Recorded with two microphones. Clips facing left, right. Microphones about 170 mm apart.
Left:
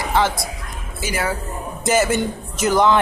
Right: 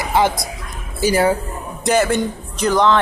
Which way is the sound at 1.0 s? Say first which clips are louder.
Right 9 dB; 35° right (ahead or behind).